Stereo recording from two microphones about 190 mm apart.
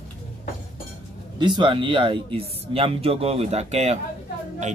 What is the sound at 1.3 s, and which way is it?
Speech, 25° right (ahead or behind).